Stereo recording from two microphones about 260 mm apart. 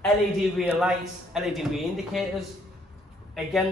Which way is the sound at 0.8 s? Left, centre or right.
Centre.